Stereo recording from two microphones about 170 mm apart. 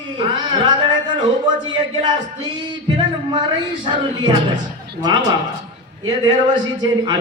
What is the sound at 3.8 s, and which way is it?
Speech, 25° right (ahead or behind).